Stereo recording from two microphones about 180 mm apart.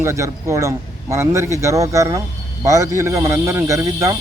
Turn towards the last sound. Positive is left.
turn(degrees=-20)  # may be behind; listen again after turning